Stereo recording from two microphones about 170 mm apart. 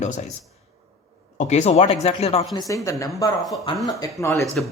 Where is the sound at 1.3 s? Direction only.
40° left (ahead or behind).